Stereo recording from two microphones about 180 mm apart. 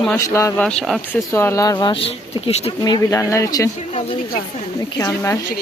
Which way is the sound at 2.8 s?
20° left (ahead or behind).